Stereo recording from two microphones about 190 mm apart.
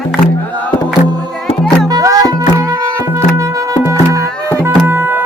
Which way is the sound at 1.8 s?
20° right (ahead or behind).